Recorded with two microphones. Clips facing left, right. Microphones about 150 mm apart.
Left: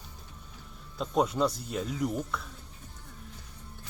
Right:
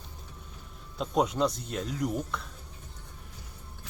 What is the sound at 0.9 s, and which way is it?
Speech, centre (ahead or behind).